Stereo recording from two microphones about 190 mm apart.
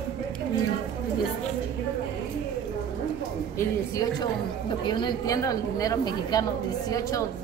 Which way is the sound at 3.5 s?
20° left (ahead or behind).